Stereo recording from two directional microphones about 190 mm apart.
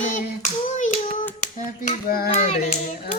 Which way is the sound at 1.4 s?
45° left (ahead or behind).